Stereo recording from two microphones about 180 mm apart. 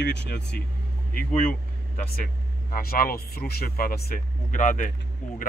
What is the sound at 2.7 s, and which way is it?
A man's voice, 50° left (ahead or behind).